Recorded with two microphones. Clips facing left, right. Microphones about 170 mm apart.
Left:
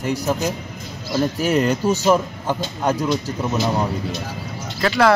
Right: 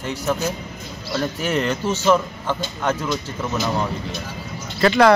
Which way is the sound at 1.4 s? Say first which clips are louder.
Left 4 dB; 40° left (ahead or behind).